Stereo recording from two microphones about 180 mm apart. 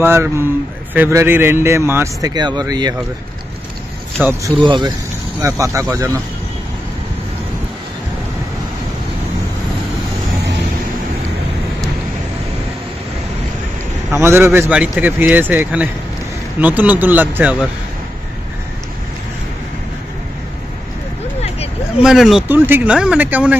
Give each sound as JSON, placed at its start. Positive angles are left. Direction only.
{"t": 0.0, "sound": "speech", "side_deg": -15}
{"t": 4.2, "sound": "speech", "side_deg": -10}
{"t": 4.6, "sound": "speech", "side_deg": -25}
{"t": 14.1, "sound": "speech", "side_deg": -15}
{"t": 21.4, "sound": "vehicle", "side_deg": 35}
{"t": 22.0, "sound": "speech", "side_deg": 0}